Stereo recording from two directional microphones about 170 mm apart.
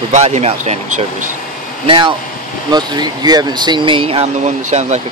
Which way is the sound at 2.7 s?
25° right (ahead or behind).